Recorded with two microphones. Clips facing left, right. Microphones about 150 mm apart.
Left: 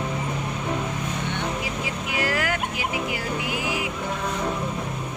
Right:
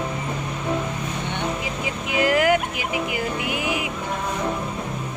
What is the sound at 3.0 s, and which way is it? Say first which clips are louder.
Music: right 2 dB; 20° right (ahead or behind).